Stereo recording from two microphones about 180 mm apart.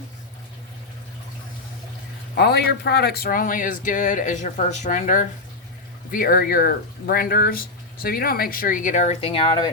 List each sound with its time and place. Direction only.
2.3 s speech: 65° left (ahead or behind); by 9.7 s 25° left (ahead or behind)